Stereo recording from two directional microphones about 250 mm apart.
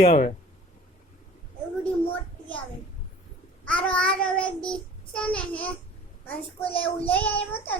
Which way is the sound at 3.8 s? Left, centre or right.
Centre.